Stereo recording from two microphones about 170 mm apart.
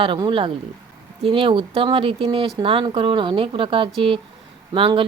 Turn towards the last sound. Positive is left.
turn(degrees=-30)  # may be behind; listen again after turning